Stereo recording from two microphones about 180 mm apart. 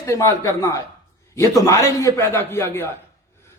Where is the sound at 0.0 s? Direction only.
15° left (ahead or behind).